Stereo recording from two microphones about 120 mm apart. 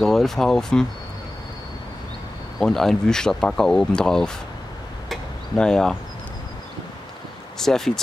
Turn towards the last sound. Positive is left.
turn(degrees=5)  # may be behind; listen again after turning